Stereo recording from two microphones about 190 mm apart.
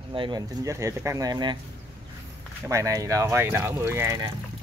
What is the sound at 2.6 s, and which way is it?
Speech, 15° right (ahead or behind).